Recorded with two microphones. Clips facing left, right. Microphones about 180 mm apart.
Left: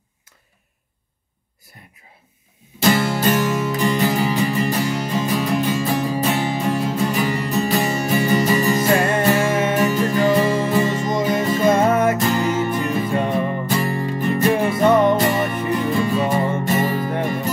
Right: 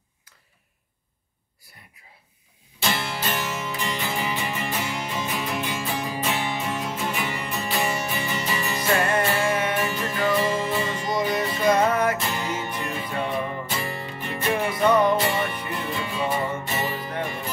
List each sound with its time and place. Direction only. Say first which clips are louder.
2.8 s music: left 10 dB; 45° left (ahead or behind)
9.5 s music: left 5 dB; 25° left (ahead or behind)
9.8 s music: left 8 dB; 40° left (ahead or behind)
11.7 s music: left 3 dB; 25° left (ahead or behind)
12.2 s music: left 9 dB; 45° left (ahead or behind)